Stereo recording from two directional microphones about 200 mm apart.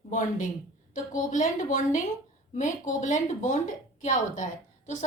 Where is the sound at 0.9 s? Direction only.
40° left (ahead or behind).